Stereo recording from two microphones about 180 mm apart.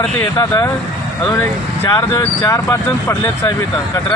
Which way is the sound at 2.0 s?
25° left (ahead or behind).